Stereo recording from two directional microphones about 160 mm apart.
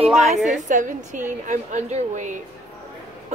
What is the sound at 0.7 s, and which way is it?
A woman's voice, 55° right (ahead or behind).